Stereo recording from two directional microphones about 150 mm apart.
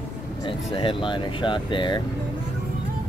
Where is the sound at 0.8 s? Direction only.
35° left (ahead or behind).